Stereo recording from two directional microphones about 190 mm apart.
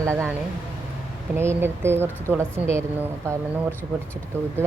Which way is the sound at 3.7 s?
10° left (ahead or behind).